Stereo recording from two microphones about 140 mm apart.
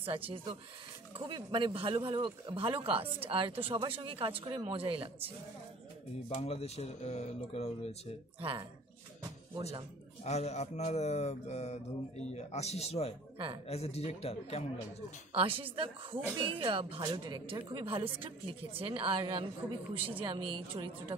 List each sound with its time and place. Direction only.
0.0 s speech: 40° right (ahead or behind)
6.3 s speech: 50° left (ahead or behind)
8.4 s speech: 40° right (ahead or behind)
9.6 s speech: 25° right (ahead or behind)
10.2 s speech: 50° left (ahead or behind)
15.3 s speech: 40° right (ahead or behind)